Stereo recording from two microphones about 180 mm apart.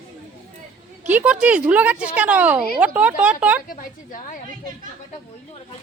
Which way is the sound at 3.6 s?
45° left (ahead or behind).